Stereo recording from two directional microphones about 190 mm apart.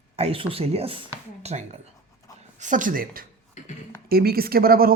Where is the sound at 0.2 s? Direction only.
30° right (ahead or behind).